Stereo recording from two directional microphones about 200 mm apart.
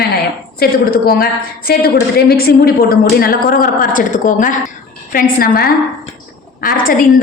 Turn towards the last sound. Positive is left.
turn(degrees=45)  # may be behind; listen again after turning